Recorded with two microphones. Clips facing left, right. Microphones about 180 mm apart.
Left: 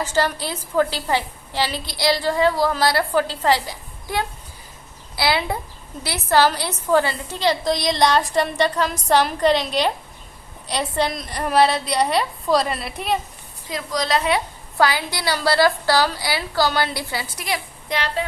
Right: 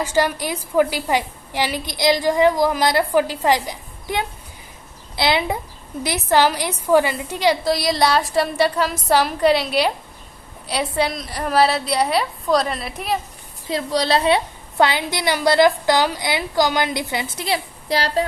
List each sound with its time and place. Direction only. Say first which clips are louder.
0.0 s a woman's voice: right 2 dB; 15° right (ahead or behind)
13.7 s a woman's voice: right 4 dB; 30° right (ahead or behind)